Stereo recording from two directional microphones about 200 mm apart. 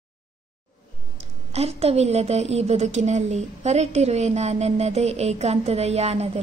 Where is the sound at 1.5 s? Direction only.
30° right (ahead or behind).